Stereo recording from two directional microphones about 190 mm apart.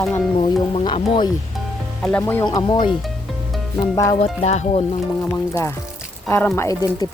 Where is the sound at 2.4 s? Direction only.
25° left (ahead or behind).